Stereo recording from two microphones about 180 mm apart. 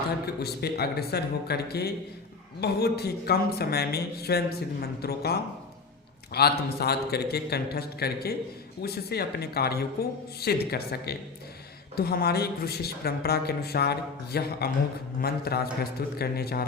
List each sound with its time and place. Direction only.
0.4 s speech: 60° left (ahead or behind)